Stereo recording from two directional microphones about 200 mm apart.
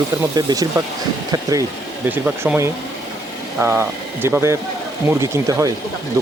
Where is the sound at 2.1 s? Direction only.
10° right (ahead or behind).